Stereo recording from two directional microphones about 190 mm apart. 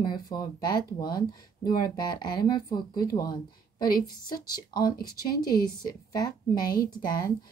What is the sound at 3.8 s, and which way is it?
A woman's voice, 50° left (ahead or behind).